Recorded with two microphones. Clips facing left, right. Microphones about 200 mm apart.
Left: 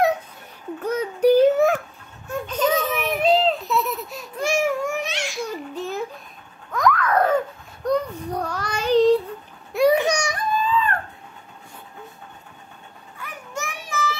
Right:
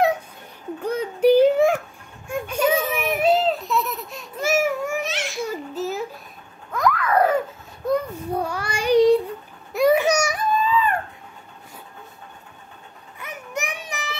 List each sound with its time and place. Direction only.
1.3 s a sound: 10° right (ahead or behind)
6.7 s babbling: 5° right (ahead or behind)
7.8 s child singing: 5° right (ahead or behind)
9.7 s baby cry: centre (ahead or behind)
13.2 s child singing: 20° right (ahead or behind)